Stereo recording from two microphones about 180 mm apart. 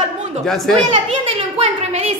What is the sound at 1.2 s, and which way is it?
Speech, 35° right (ahead or behind).